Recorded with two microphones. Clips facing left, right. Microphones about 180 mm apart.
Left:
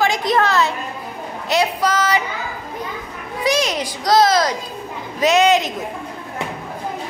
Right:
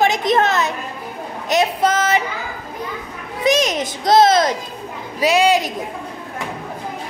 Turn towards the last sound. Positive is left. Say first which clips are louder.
# left 1 dB
turn(degrees=-10)  # may be behind; listen again after turning